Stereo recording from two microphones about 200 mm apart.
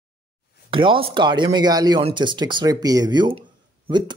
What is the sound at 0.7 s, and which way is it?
Speech, 25° right (ahead or behind).